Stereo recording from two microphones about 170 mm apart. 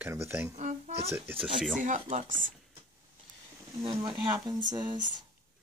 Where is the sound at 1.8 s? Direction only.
45° right (ahead or behind).